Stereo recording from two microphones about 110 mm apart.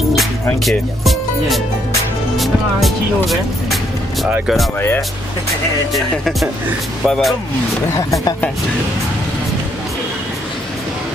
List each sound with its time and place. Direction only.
0.7 s speech: centre (ahead or behind)
2.3 s music: centre (ahead or behind)
4.7 s speech: 20° left (ahead or behind)
7.1 s speech: centre (ahead or behind)
7.9 s speech: 30° left (ahead or behind)